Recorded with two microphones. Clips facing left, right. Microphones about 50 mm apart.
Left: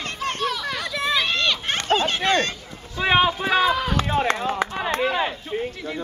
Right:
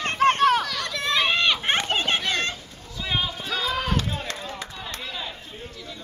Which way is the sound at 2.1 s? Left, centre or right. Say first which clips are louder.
Left 6 dB; left.